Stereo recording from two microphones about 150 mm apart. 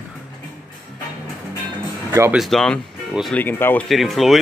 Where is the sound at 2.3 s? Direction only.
Centre (ahead or behind).